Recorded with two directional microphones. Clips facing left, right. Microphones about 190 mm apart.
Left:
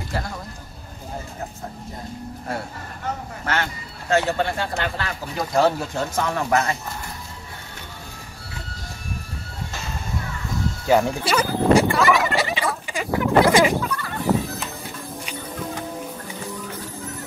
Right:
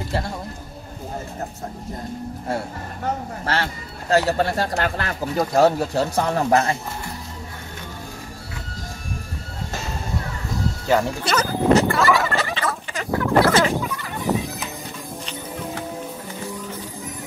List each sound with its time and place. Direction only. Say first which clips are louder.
3.4 s speech: right 1 dB; 35° right (ahead or behind)
10.9 s turkey: left 2 dB; 10° left (ahead or behind)
13.8 s fowl: left 1 dB; 15° right (ahead or behind)